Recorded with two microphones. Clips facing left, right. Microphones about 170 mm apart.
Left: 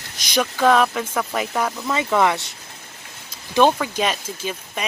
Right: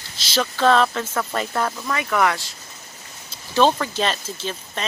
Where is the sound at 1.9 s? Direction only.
20° left (ahead or behind).